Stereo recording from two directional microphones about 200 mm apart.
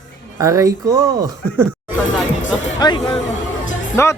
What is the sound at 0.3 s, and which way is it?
Speech, 15° right (ahead or behind).